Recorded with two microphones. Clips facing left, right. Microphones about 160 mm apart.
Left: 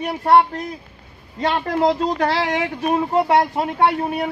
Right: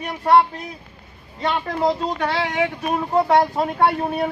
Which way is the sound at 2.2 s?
35° left (ahead or behind).